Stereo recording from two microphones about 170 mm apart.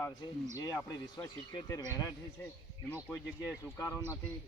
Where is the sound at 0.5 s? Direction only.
20° left (ahead or behind).